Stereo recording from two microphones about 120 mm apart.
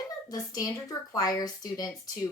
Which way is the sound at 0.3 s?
30° left (ahead or behind).